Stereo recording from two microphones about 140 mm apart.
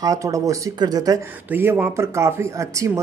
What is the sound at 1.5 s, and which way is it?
Speech, 15° right (ahead or behind).